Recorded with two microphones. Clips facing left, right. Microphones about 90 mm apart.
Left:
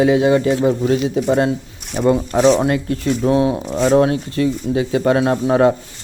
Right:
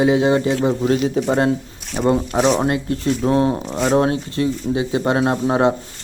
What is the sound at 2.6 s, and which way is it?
A man's voice, 30° right (ahead or behind).